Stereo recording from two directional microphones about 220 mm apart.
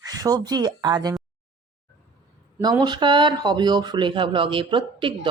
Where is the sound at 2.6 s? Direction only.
20° right (ahead or behind).